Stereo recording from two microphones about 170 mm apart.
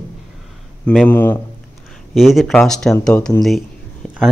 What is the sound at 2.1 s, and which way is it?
Speech, centre (ahead or behind).